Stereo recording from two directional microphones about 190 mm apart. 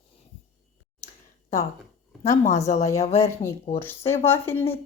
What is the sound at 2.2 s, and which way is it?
Speech, 40° left (ahead or behind).